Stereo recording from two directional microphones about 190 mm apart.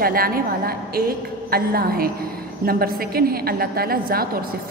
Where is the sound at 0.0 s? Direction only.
50° right (ahead or behind).